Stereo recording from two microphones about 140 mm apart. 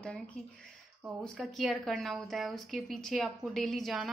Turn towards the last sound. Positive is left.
turn(degrees=0)  # may be behind; listen again after turning